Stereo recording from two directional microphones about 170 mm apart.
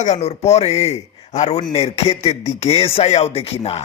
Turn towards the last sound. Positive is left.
turn(degrees=35)  # may be behind; listen again after turning